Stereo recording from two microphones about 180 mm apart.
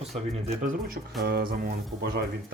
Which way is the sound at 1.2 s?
60° right (ahead or behind).